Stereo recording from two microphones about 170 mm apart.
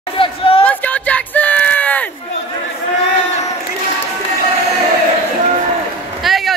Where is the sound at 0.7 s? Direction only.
10° left (ahead or behind).